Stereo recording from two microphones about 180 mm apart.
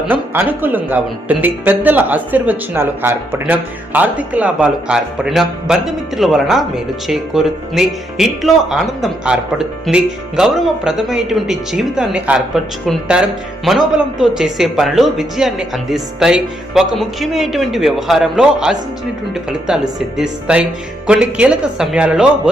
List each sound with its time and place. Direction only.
0.1 s speech: 10° right (ahead or behind)